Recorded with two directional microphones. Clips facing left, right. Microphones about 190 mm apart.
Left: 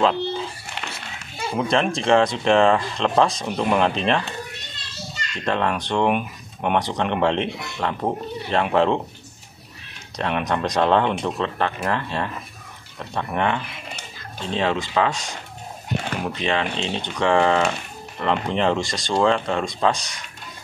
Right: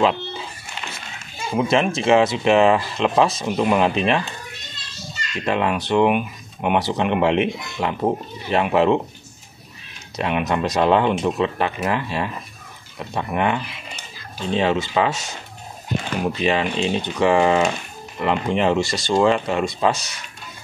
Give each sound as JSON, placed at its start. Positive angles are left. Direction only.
{"t": 0.0, "sound": "a sound", "side_deg": -5}
{"t": 0.8, "sound": "children playing", "side_deg": 65}
{"t": 1.6, "sound": "speech", "side_deg": -5}
{"t": 5.4, "sound": "speech", "side_deg": -10}
{"t": 10.1, "sound": "speech", "side_deg": -5}